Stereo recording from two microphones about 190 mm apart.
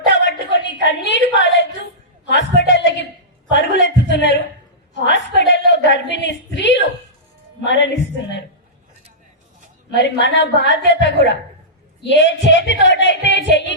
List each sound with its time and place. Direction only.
0.1 s a sound: 75° left (ahead or behind)
7.6 s speech: 70° left (ahead or behind)
9.9 s speech: 70° left (ahead or behind)